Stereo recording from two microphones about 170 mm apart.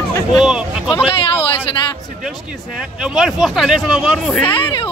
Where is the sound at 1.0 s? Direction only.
35° left (ahead or behind).